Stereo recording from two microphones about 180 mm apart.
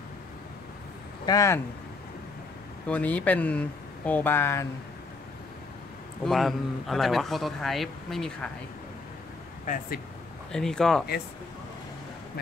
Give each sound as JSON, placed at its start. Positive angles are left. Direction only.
{"t": 1.2, "sound": "speech", "side_deg": 20}
{"t": 2.9, "sound": "speech", "side_deg": 10}
{"t": 6.2, "sound": "speech", "side_deg": 0}
{"t": 9.7, "sound": "speech", "side_deg": 45}
{"t": 10.5, "sound": "speech", "side_deg": 5}